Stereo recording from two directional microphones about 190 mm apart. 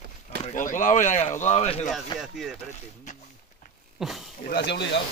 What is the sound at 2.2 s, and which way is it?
Speech, centre (ahead or behind).